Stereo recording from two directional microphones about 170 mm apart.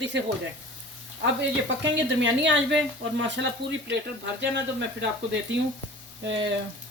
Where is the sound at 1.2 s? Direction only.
90° right.